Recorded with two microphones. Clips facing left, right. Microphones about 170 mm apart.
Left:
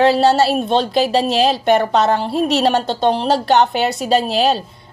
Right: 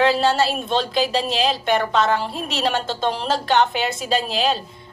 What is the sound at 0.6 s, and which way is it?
A woman's voice, 35° left (ahead or behind).